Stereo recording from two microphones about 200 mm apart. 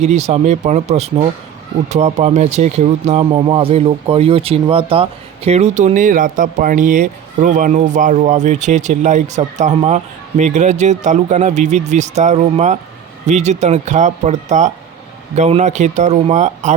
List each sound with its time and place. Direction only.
0.0 s speech: 35° right (ahead or behind)